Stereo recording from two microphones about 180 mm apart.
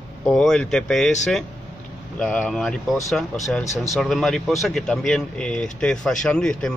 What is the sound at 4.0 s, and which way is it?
Speech, centre (ahead or behind).